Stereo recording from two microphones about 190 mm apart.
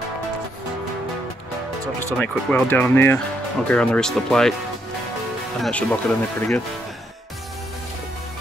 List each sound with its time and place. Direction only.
2.1 s speech: 5° left (ahead or behind)
5.6 s speech: 5° left (ahead or behind)